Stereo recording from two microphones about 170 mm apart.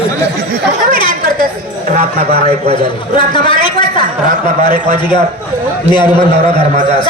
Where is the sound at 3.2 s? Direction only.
30° left (ahead or behind).